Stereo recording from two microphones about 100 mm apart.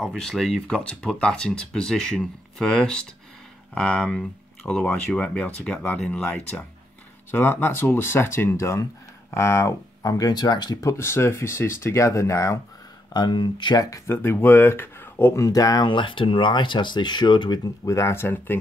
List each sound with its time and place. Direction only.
0.0 s speech: 5° left (ahead or behind)
6.2 s speech: 15° left (ahead or behind)
13.1 s speech: 50° left (ahead or behind)
14.1 s speech: 25° left (ahead or behind)
15.4 s speech: 40° left (ahead or behind)
17.8 s speech: 30° left (ahead or behind)